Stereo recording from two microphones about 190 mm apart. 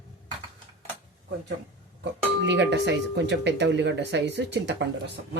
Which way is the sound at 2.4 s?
65° right (ahead or behind).